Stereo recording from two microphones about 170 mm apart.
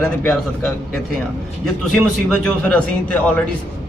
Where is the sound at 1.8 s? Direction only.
5° left (ahead or behind).